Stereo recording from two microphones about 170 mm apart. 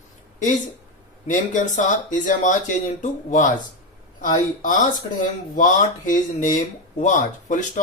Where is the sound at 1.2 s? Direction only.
50° left (ahead or behind).